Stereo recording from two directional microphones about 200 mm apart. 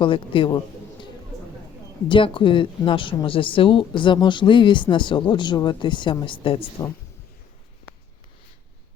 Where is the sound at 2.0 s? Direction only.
25° left (ahead or behind).